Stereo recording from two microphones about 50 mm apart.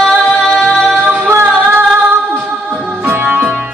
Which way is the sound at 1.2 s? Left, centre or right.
Right.